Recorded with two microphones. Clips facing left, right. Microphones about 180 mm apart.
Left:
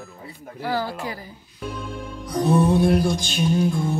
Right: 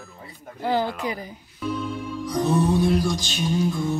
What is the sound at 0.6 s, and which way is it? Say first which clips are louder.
Speech: right 2 dB; 20° right (ahead or behind).